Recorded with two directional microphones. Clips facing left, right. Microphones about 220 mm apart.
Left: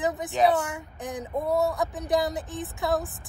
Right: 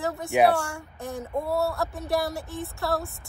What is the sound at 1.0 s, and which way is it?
Speech, 20° left (ahead or behind).